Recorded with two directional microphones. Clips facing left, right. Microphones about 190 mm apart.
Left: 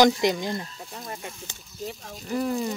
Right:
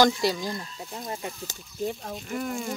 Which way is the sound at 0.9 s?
20° right (ahead or behind).